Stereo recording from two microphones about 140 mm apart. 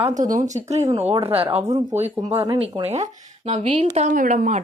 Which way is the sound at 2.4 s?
45° right (ahead or behind).